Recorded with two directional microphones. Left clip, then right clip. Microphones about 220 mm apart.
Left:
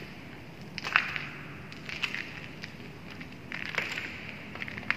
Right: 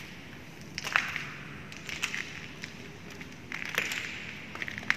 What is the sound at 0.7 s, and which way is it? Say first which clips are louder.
Crushing: left 2 dB; 50° right (ahead or behind).